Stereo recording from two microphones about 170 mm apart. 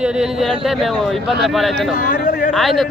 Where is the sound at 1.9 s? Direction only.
55° left (ahead or behind).